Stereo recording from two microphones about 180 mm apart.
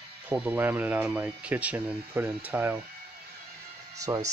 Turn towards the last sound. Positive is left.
turn(degrees=-20)  # may be behind; listen again after turning